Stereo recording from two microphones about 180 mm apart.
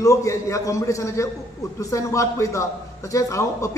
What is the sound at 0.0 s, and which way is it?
A man's voice, 20° left (ahead or behind).